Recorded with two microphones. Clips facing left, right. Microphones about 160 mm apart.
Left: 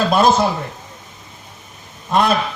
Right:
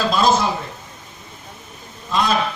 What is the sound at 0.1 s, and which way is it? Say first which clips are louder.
Speech: left 3 dB; 55° left (ahead or behind).